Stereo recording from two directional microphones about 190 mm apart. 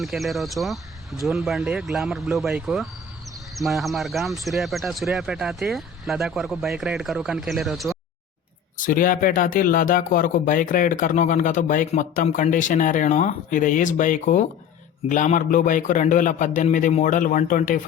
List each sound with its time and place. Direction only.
0.0 s speech: centre (ahead or behind)
8.8 s speech: 45° left (ahead or behind)